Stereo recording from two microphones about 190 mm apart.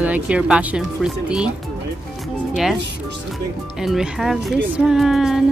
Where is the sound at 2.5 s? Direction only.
5° right (ahead or behind).